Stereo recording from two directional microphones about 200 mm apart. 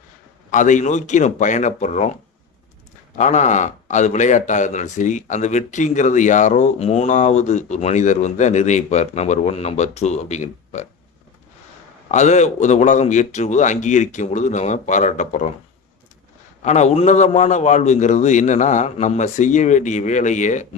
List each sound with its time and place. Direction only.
0.5 s speech: 40° left (ahead or behind)
3.2 s speech: 35° left (ahead or behind)
12.1 s speech: 35° left (ahead or behind)
16.6 s speech: 35° left (ahead or behind)